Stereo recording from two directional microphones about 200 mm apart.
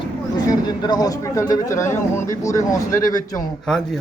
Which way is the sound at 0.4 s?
20° left (ahead or behind).